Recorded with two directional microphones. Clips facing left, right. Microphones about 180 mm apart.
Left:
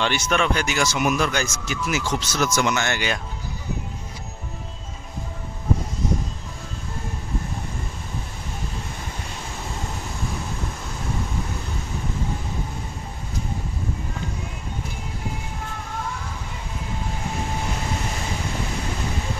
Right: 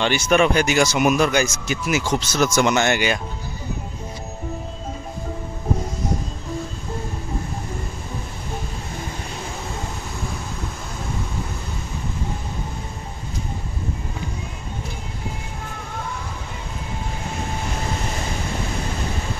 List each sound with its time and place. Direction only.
0.0 s speech: 10° right (ahead or behind)
2.1 s speech: 20° right (ahead or behind)